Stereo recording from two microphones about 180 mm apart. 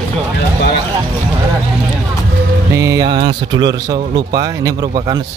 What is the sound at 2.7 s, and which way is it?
A man's voice, 20° right (ahead or behind).